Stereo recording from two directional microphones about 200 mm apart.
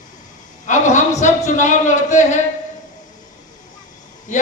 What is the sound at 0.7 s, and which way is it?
A woman's voice, 35° left (ahead or behind).